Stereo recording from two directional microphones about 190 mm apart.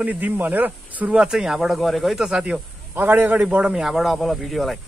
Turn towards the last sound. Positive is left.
turn(degrees=0)  # may be behind; listen again after turning